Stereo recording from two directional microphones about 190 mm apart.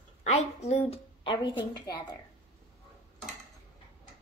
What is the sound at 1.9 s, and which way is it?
Speech, 20° left (ahead or behind).